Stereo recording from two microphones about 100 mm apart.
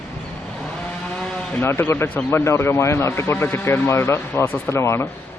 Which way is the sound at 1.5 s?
20° left (ahead or behind).